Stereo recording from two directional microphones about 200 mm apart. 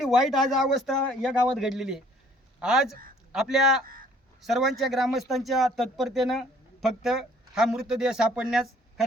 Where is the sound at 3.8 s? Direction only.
45° right (ahead or behind).